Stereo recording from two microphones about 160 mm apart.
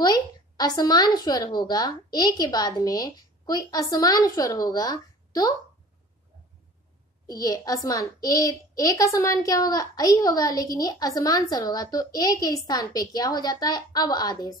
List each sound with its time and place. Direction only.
0.0 s a child's voice: 25° left (ahead or behind)
7.2 s a child's voice: 25° left (ahead or behind)